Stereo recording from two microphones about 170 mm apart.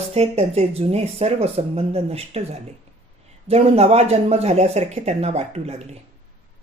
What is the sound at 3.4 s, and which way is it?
Speech, 35° right (ahead or behind).